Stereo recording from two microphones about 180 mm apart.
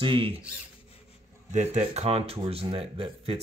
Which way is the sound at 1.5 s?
40° right (ahead or behind).